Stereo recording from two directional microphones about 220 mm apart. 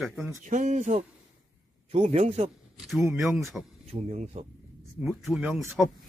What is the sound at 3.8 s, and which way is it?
Speech, 30° right (ahead or behind).